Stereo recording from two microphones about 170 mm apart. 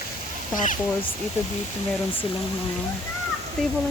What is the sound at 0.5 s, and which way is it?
Speech, 50° left (ahead or behind).